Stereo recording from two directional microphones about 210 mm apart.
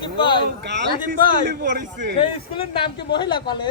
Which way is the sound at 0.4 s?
55° right (ahead or behind).